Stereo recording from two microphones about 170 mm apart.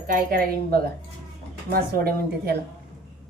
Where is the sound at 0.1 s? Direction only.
55° right (ahead or behind).